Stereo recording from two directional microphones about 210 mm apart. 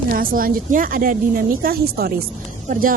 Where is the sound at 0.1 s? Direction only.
45° right (ahead or behind).